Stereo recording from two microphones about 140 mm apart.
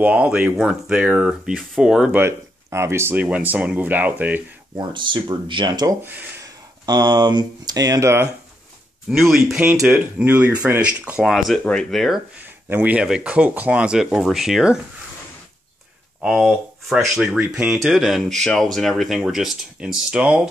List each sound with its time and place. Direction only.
0.0 s speech: 10° right (ahead or behind)
2.2 s speech: 20° right (ahead or behind)
4.7 s speech: 35° right (ahead or behind); by 8.3 s 20° right (ahead or behind)
9.1 s speech: 5° right (ahead or behind)
12.4 s speech: 15° right (ahead or behind)
16.2 s speech: 5° right (ahead or behind)